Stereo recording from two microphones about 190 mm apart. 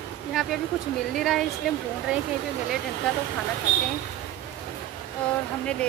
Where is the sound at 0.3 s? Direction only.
Centre (ahead or behind).